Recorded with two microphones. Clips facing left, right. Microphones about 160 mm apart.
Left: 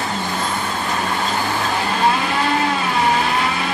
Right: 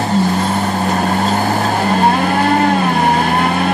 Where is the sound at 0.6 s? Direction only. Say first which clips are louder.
Right 7 dB; 45° right (ahead or behind).